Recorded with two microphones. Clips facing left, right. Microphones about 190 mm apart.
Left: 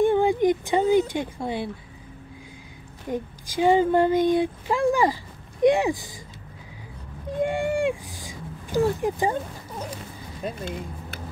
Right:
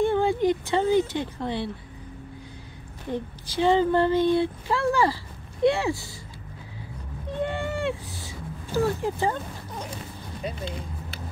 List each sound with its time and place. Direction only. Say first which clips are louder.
0.0 s a sound: left 3 dB; 15° left (ahead or behind)
3.1 s speech: left 1 dB; 10° left (ahead or behind)
7.4 s speech: left 5 dB; 15° left (ahead or behind)
10.4 s speech: left 2 dB; 50° left (ahead or behind)